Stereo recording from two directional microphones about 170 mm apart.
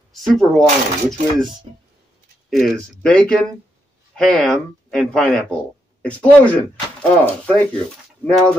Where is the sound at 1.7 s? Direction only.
35° right (ahead or behind).